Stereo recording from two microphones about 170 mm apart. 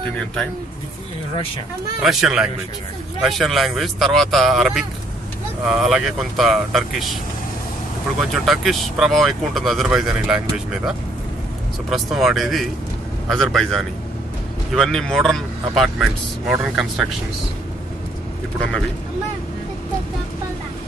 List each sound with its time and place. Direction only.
2.0 s speech: centre (ahead or behind)
8.2 s speech: centre (ahead or behind)
11.9 s speech: centre (ahead or behind)